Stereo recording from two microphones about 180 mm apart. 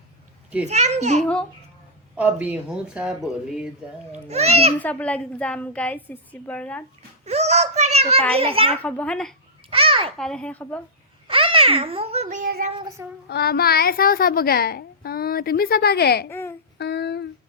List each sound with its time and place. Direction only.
0.7 s speech: 40° right (ahead or behind)
1.2 s speech: 5° left (ahead or behind)
2.1 s speech: 10° right (ahead or behind)
4.1 s speech: 35° right (ahead or behind)
4.8 s a woman's voice: 10° left (ahead or behind)
7.3 s child singing: 40° right (ahead or behind)
8.4 s speech: 30° right (ahead or behind)
8.8 s a woman's voice: 10° left (ahead or behind)
9.6 s babbling: 30° right (ahead or behind)
10.2 s a woman's voice: 5° left (ahead or behind)
11.3 s a child's voice: 30° right (ahead or behind)
13.2 s a child's voice: 60° left (ahead or behind)
16.3 s babbling: 15° left (ahead or behind)
16.7 s a sound: 65° left (ahead or behind)